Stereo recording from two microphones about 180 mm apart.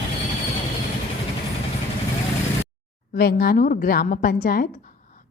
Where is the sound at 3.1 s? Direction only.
60° left (ahead or behind).